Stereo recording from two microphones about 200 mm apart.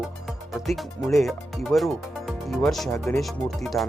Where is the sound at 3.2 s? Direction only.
Centre (ahead or behind).